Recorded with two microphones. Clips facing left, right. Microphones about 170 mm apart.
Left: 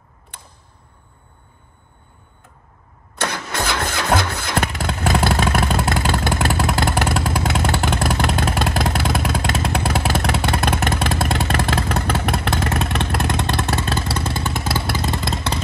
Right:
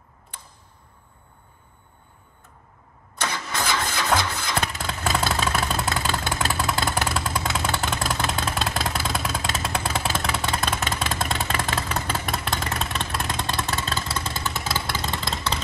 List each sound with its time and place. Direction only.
3.2 s engine starting: 65° left (ahead or behind)
7.8 s vehicle: 65° left (ahead or behind)